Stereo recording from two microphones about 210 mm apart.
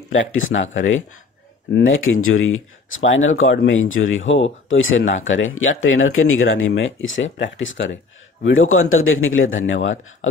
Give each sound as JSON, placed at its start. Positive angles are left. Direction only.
{"t": 0.1, "sound": "speech", "side_deg": 70}
{"t": 8.5, "sound": "speech", "side_deg": 75}